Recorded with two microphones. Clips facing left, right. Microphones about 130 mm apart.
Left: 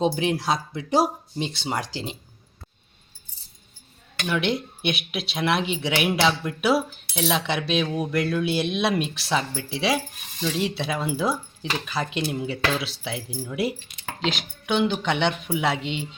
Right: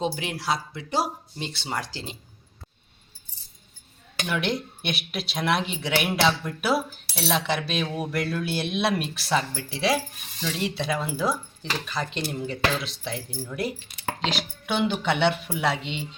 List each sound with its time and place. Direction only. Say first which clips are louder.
0.0 s speech: left 6 dB; 20° left (ahead or behind)
4.3 s speech: left 3 dB; centre (ahead or behind)